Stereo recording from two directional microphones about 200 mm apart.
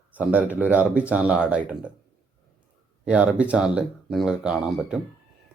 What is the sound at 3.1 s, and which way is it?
Speech, 5° right (ahead or behind).